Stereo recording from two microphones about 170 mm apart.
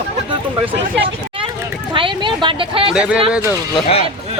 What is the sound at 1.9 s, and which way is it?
Speech, 30° right (ahead or behind).